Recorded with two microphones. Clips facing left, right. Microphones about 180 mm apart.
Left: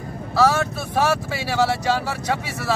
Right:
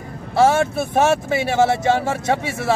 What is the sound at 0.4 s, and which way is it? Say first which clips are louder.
Speech: right 4 dB; 25° right (ahead or behind).